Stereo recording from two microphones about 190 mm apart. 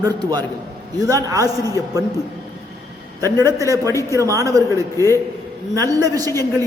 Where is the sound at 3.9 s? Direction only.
15° left (ahead or behind).